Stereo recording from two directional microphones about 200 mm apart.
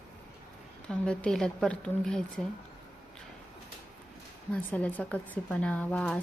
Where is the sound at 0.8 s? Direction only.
5° left (ahead or behind).